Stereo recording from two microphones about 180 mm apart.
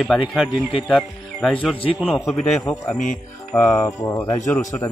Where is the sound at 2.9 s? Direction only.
45° left (ahead or behind).